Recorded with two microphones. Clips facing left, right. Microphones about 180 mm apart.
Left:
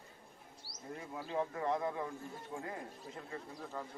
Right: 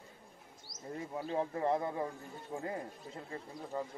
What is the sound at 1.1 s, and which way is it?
Speech, 30° right (ahead or behind).